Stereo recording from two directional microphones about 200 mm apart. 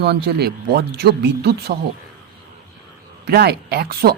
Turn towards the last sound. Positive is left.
turn(degrees=-50)  # may be behind; listen again after turning